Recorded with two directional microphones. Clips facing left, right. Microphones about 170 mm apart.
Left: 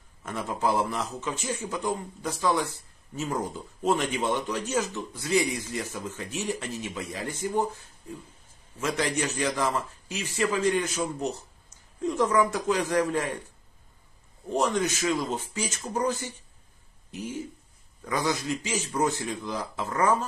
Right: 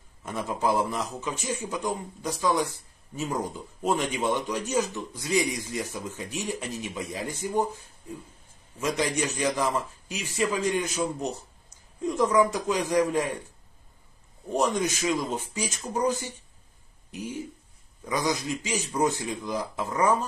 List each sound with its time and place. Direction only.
0.2 s a man's voice: 15° right (ahead or behind)
8.9 s a man's voice: 15° right (ahead or behind)
12.1 s a man's voice: 15° right (ahead or behind)
14.6 s a man's voice: 15° right (ahead or behind)